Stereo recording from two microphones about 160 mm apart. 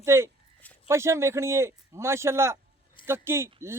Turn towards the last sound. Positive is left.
turn(degrees=-15)  # may be behind; listen again after turning